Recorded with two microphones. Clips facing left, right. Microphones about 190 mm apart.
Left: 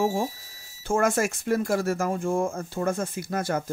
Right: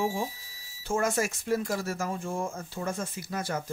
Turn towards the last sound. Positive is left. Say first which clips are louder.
# left 5 dB
turn(degrees=50)  # may be behind; listen again after turning